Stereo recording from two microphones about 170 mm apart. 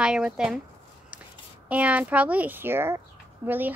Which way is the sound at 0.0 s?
5° right (ahead or behind).